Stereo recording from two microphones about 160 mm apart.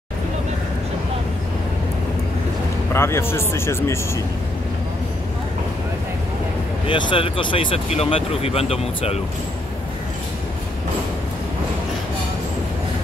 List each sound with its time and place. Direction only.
2.9 s speech: 15° left (ahead or behind)
6.9 s speech: 30° left (ahead or behind)